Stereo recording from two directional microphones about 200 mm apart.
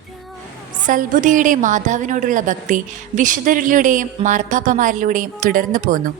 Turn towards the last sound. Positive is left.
turn(degrees=-45)  # may be behind; listen again after turning